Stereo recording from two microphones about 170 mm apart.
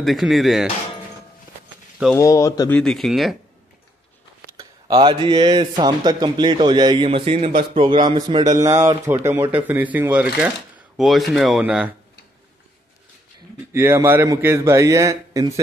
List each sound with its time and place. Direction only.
0.0 s speech: centre (ahead or behind)
2.1 s speech: 20° left (ahead or behind)
2.7 s speech: 5° left (ahead or behind)
4.6 s speech: 25° right (ahead or behind); by 11.9 s 5° right (ahead or behind)
13.7 s a man's voice: 15° right (ahead or behind)